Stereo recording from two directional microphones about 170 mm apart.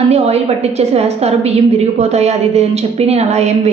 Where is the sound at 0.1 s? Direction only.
40° right (ahead or behind).